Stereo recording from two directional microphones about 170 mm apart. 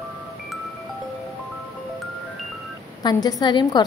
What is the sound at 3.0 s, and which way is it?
Speech, 25° left (ahead or behind).